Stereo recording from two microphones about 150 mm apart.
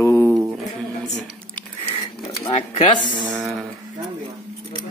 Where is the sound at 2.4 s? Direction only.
40° left (ahead or behind).